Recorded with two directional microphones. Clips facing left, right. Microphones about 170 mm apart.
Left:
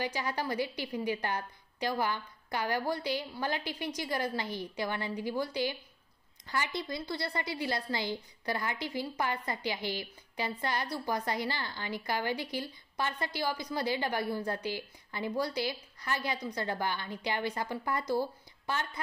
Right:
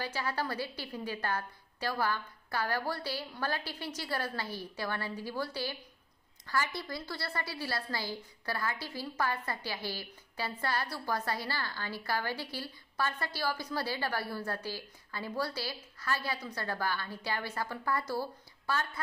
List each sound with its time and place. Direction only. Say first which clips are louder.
0.0 s a woman's voice: left 1 dB; 15° left (ahead or behind)